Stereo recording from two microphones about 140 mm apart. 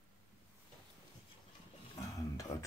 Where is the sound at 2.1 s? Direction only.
25° left (ahead or behind).